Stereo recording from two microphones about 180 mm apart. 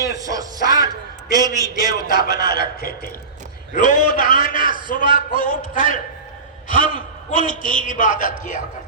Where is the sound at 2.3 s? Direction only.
55° left (ahead or behind).